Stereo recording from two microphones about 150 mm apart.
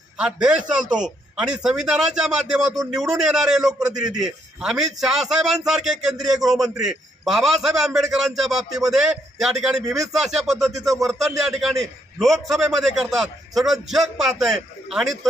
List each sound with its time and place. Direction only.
0.2 s a man's voice: 5° right (ahead or behind)
3.8 s a man's voice: 25° right (ahead or behind)
4.2 s a man's voice: 5° right (ahead or behind)